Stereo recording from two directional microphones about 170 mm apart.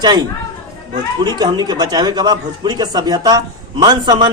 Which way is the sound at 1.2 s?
25° right (ahead or behind).